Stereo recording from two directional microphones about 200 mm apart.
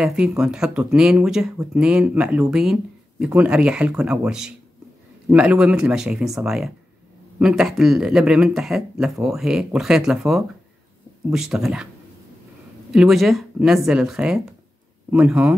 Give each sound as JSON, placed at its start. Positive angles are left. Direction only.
{"t": 0.0, "sound": "speech", "side_deg": -5}
{"t": 12.9, "sound": "speech", "side_deg": 0}